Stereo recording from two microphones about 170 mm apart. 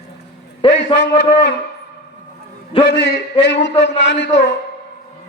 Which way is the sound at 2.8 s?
80° left.